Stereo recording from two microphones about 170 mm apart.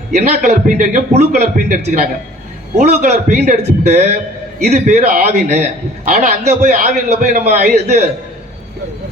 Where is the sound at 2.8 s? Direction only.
45° right (ahead or behind).